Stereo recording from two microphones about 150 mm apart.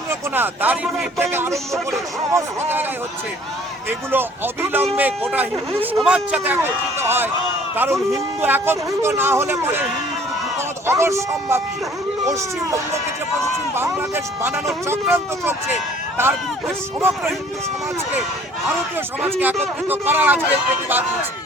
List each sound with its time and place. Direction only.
0.1 s speech: 15° right (ahead or behind)
3.8 s speech: 15° right (ahead or behind)
10.8 s speech: 20° right (ahead or behind)
14.8 s speech: 15° right (ahead or behind)
19.4 s speech: 10° right (ahead or behind)